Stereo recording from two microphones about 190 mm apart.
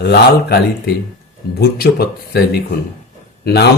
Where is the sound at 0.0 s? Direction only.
60° left (ahead or behind).